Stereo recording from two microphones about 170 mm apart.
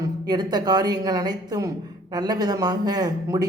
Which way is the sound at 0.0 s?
25° right (ahead or behind).